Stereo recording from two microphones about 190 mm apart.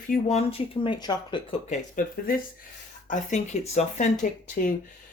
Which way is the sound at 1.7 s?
45° left (ahead or behind).